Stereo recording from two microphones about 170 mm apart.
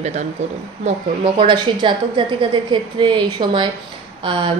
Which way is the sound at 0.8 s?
30° right (ahead or behind).